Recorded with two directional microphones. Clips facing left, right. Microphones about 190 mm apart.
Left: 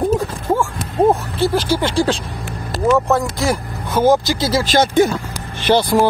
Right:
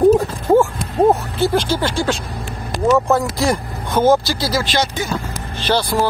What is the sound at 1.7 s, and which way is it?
Speech, 20° left (ahead or behind).